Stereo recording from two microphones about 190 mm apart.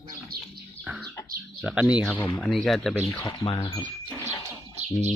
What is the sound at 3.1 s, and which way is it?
Speech, 20° left (ahead or behind).